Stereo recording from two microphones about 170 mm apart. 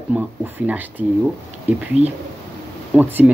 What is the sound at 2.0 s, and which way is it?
Speech, 40° right (ahead or behind).